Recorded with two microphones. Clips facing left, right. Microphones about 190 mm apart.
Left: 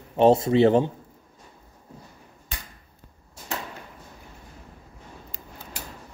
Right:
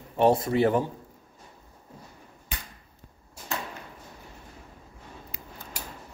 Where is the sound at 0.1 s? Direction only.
25° left (ahead or behind).